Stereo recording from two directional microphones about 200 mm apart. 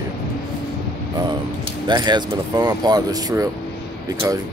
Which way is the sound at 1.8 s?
20° right (ahead or behind).